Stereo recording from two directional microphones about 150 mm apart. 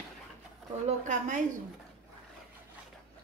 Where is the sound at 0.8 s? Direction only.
55° right (ahead or behind).